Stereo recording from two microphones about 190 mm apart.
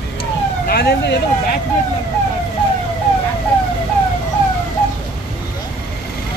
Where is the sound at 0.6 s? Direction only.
55° left (ahead or behind).